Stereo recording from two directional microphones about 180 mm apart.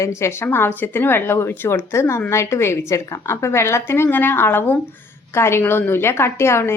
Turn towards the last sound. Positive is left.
turn(degrees=15)  # may be behind; listen again after turning